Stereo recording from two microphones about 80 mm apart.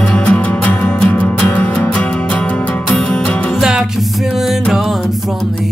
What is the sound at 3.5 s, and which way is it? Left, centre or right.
Music, centre.